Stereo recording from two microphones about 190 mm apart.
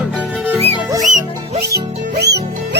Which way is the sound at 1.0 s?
40° right (ahead or behind).